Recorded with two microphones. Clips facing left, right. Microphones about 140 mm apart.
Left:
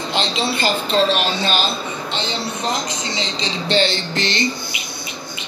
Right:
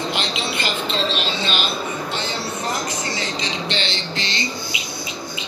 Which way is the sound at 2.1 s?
20° left (ahead or behind).